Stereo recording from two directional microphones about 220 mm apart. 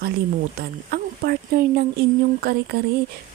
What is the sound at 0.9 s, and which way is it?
Speech, 45° right (ahead or behind).